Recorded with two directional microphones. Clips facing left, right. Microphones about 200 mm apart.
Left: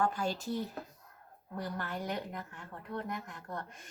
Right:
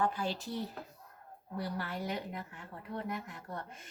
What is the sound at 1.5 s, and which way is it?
Speech, 5° right (ahead or behind).